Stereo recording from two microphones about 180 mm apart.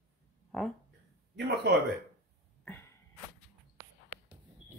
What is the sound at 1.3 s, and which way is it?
Speech, 75° right (ahead or behind).